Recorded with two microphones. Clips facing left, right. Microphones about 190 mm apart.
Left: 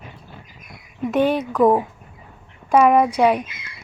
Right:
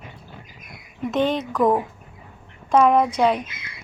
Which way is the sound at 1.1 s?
10° left (ahead or behind).